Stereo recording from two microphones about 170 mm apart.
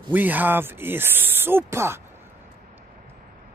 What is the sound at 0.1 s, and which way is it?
Speech, 10° right (ahead or behind).